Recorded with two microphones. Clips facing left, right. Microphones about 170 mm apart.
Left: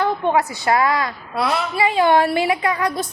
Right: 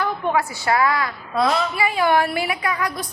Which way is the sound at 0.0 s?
20° left (ahead or behind).